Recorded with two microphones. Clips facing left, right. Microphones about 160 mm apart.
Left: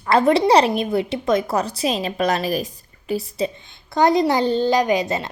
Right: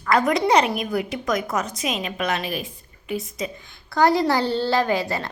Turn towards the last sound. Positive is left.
turn(degrees=20)  # may be behind; listen again after turning